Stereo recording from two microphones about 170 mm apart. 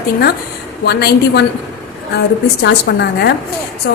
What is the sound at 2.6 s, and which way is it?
Speech, 80° left.